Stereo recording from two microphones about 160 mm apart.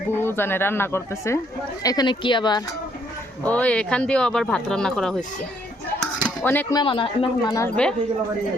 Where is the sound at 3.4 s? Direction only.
10° left (ahead or behind).